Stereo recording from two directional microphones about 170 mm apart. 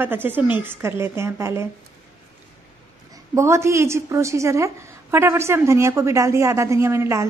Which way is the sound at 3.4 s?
15° right (ahead or behind).